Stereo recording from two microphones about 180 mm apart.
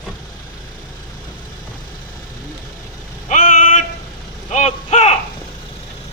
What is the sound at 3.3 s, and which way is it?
Vehicle, 45° left (ahead or behind).